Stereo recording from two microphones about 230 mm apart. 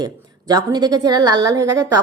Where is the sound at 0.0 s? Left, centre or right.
Centre.